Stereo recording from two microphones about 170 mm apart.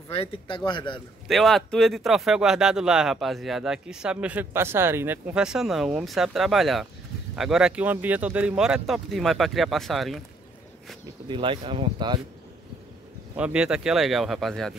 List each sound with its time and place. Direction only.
0.1 s speech: 35° left (ahead or behind)
1.2 s speech: centre (ahead or behind)
11.2 s speech: 30° right (ahead or behind)
13.4 s speech: 5° right (ahead or behind)